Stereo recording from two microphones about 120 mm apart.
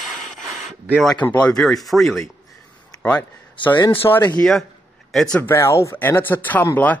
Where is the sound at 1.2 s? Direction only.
10° left (ahead or behind).